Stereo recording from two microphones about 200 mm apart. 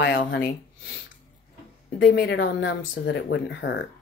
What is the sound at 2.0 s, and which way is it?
Speech, 70° left (ahead or behind).